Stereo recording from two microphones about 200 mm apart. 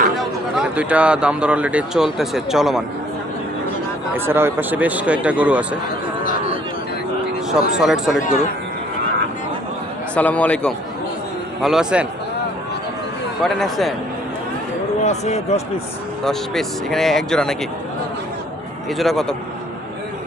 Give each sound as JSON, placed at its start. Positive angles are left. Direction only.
{"t": 0.2, "sound": "speech", "side_deg": -5}
{"t": 4.1, "sound": "speech", "side_deg": -10}
{"t": 7.5, "sound": "speech", "side_deg": 0}
{"t": 10.2, "sound": "a man's voice", "side_deg": 5}
{"t": 13.4, "sound": "speech", "side_deg": 0}
{"t": 15.0, "sound": "speech", "side_deg": 35}
{"t": 16.2, "sound": "speech", "side_deg": 0}
{"t": 18.9, "sound": "speech", "side_deg": 0}